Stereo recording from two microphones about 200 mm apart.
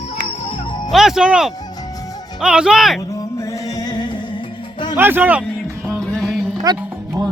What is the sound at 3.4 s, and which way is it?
Music, 15° left (ahead or behind).